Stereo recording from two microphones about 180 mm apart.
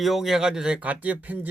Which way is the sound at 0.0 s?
Centre (ahead or behind).